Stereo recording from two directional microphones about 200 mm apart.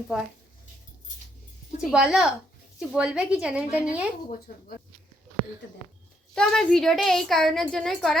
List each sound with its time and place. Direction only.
0.1 s a woman's voice: 5° right (ahead or behind)
1.8 s a woman's voice: 5° right (ahead or behind)
4.5 s speech: 50° left (ahead or behind)
6.3 s a woman's voice: 5° left (ahead or behind)